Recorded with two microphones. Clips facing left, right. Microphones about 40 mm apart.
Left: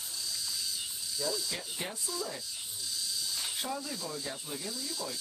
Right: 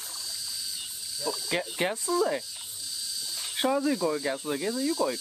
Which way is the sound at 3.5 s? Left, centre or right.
Right.